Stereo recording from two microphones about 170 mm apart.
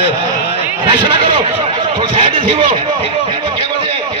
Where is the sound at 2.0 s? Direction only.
30° right (ahead or behind).